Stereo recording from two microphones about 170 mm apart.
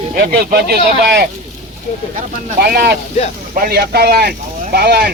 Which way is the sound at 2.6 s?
70° right (ahead or behind).